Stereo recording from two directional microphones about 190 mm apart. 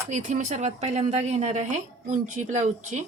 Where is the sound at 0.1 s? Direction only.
40° right (ahead or behind).